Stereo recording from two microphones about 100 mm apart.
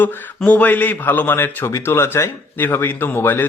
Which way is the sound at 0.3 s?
15° left (ahead or behind).